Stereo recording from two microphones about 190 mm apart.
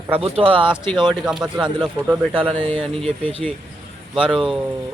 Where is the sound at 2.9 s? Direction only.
Centre (ahead or behind).